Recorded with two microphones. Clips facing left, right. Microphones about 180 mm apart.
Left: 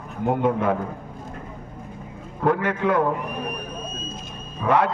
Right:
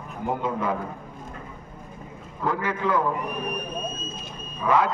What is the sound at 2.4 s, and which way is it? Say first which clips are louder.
Speech: left 5 dB; 65° left (ahead or behind).